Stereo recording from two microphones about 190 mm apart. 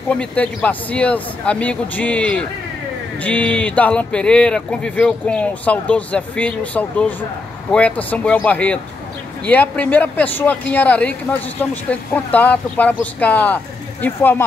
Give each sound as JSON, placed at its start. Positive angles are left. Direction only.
{"t": 0.1, "sound": "speech", "side_deg": 5}